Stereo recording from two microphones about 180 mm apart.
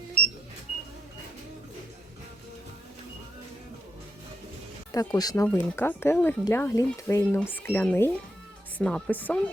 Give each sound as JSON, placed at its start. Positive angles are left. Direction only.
{"t": 4.9, "sound": "speech", "side_deg": 20}
{"t": 5.5, "sound": "a woman's voice", "side_deg": 10}